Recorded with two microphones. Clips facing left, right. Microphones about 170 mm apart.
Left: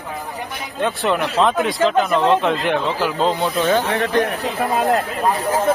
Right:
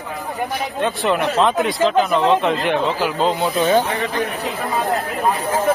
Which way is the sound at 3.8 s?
75° left (ahead or behind).